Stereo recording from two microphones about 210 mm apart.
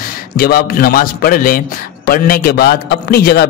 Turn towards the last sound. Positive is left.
turn(degrees=45)  # may be behind; listen again after turning